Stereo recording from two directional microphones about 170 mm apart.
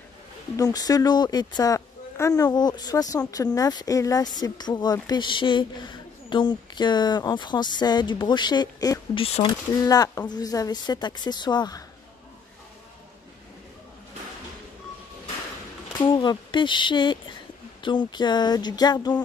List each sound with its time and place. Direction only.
0.6 s speech: 20° left (ahead or behind)
9.2 s speech: 30° left (ahead or behind)
15.9 s speech: 25° left (ahead or behind)